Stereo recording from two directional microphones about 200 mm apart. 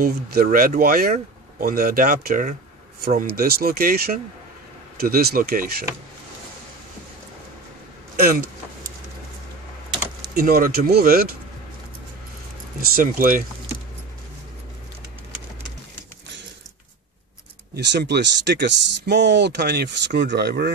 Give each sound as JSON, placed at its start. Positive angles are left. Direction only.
{"t": 0.0, "sound": "speech", "side_deg": -45}
{"t": 8.2, "sound": "speech", "side_deg": -50}
{"t": 10.3, "sound": "speech", "side_deg": -45}
{"t": 12.9, "sound": "speech", "side_deg": -45}
{"t": 17.7, "sound": "speech", "side_deg": -60}